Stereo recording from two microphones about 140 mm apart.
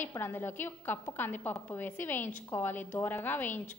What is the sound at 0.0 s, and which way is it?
A woman's voice, 15° left (ahead or behind).